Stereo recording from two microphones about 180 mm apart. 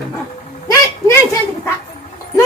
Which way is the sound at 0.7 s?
15° left (ahead or behind).